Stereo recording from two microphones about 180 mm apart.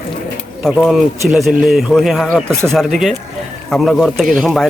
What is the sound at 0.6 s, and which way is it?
Speech, centre (ahead or behind).